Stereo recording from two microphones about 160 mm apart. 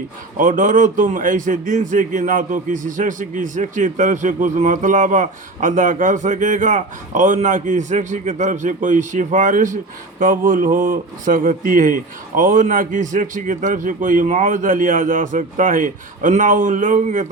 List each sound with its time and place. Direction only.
0.3 s a man's voice: 55° right (ahead or behind)